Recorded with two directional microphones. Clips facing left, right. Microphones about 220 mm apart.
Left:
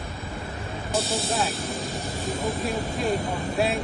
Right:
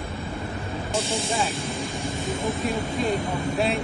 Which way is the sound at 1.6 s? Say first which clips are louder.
Right 1 dB; 30° right (ahead or behind).